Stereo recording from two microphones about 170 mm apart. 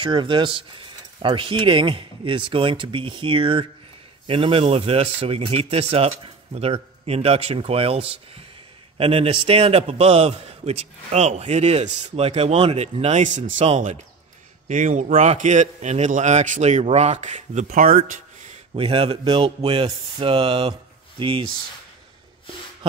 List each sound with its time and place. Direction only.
0.0 s a man's voice: 30° right (ahead or behind)